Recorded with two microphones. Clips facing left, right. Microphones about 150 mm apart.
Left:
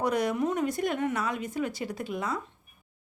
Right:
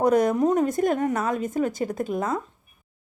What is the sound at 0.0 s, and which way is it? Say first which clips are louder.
Speech: right 7 dB; 45° right (ahead or behind).